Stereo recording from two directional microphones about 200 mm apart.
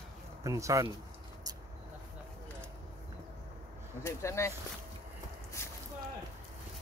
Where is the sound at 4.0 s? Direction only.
15° left (ahead or behind).